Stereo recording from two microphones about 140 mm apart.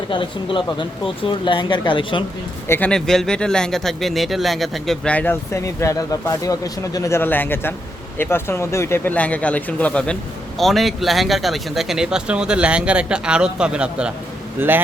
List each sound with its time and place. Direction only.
0.1 s speech: 35° left (ahead or behind)
2.6 s speech: 15° left (ahead or behind)
2.9 s speech: 5° left (ahead or behind)